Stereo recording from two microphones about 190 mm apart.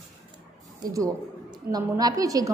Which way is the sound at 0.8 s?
15° right (ahead or behind).